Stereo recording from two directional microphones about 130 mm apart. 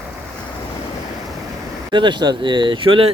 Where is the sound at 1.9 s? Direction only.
35° right (ahead or behind).